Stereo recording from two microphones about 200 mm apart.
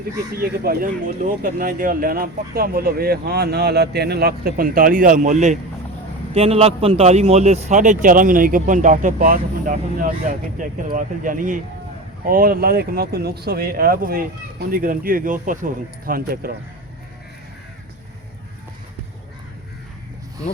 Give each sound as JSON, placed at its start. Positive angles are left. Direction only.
{"t": 0.6, "sound": "speech", "side_deg": -45}